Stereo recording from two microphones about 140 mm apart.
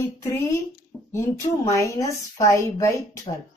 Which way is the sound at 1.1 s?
20° left (ahead or behind).